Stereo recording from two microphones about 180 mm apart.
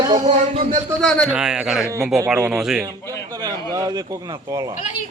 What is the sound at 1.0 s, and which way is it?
A man's voice, 5° left (ahead or behind).